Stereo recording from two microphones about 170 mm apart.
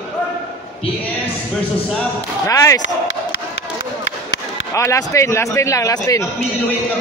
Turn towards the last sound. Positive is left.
turn(degrees=20)  # may be behind; listen again after turning